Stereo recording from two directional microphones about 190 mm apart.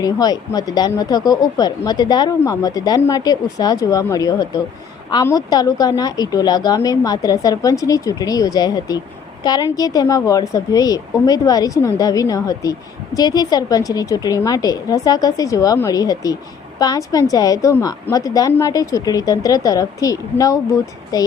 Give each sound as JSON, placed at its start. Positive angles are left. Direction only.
{"t": 0.0, "sound": "a woman's voice", "side_deg": 20}